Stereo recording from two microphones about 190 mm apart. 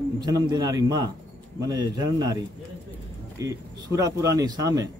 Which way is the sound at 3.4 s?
20° right (ahead or behind).